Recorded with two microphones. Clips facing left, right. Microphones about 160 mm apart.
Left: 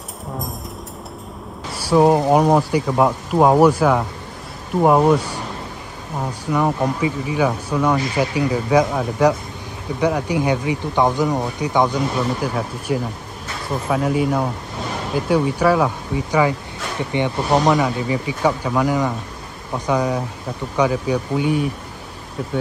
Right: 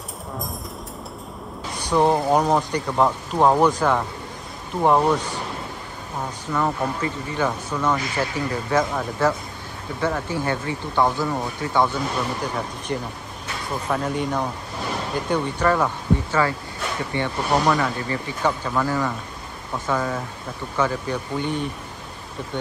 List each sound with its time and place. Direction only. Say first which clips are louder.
1.8 s speech: left 5 dB; 5° left (ahead or behind)
6.4 s speech: left 5 dB; 15° left (ahead or behind)
12.5 s speech: left 5 dB; 5° left (ahead or behind)